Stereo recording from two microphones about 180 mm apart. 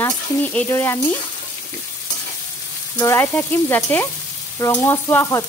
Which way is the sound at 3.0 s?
15° left (ahead or behind).